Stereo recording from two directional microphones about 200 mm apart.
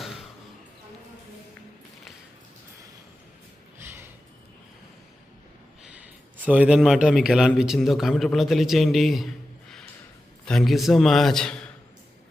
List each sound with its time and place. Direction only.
5.8 s a man's voice: 5° right (ahead or behind)